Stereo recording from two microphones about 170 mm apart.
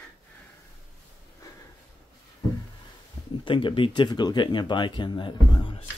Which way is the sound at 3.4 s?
30° left (ahead or behind).